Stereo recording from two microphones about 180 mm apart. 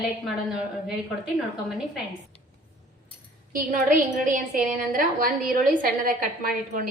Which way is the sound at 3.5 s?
50° right (ahead or behind).